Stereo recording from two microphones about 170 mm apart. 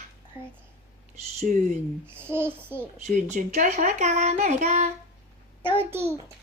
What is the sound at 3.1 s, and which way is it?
Speech, 50° right (ahead or behind).